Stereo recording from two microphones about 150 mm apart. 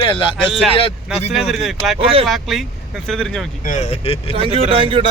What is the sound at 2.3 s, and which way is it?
A man's voice, centre (ahead or behind).